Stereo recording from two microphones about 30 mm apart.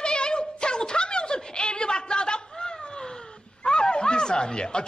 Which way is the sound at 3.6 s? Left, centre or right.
Left.